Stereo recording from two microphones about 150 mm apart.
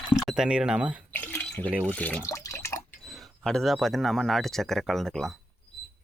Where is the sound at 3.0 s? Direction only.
Centre (ahead or behind).